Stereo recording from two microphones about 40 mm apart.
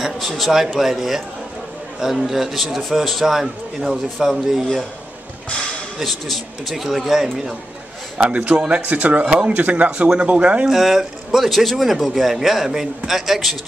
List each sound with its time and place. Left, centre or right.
0.4 s a man's voice: centre
6.0 s a man's voice: centre
8.2 s speech: right
9.2 s speech: right
9.6 s speech: right
10.7 s a man's voice: centre